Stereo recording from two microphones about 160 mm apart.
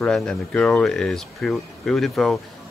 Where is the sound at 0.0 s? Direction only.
5° left (ahead or behind).